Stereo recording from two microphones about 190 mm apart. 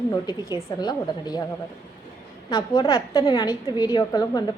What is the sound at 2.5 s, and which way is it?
Speech, 25° left (ahead or behind).